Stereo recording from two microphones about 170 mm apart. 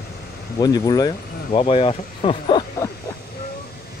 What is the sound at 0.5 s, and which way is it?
Speech, 20° left (ahead or behind).